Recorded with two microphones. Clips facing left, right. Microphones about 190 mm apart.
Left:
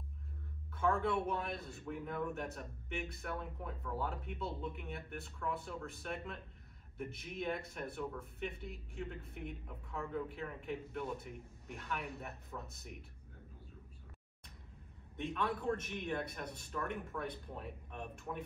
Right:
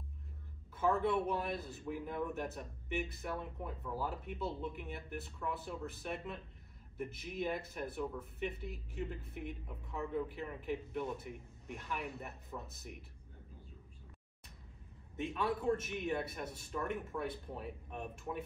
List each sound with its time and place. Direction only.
0.7 s speech: 5° right (ahead or behind)
15.2 s speech: 5° right (ahead or behind)
17.1 s speech: 20° right (ahead or behind)